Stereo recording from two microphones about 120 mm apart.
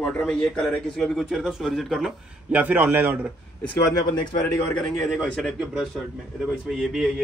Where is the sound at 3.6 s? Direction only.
35° left (ahead or behind).